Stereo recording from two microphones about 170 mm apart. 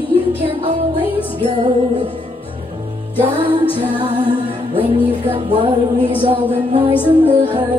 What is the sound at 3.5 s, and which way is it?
Music, 30° right (ahead or behind).